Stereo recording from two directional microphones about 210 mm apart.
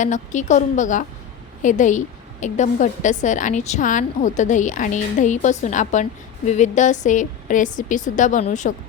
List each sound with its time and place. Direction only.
0.0 s a woman's voice: 35° left (ahead or behind)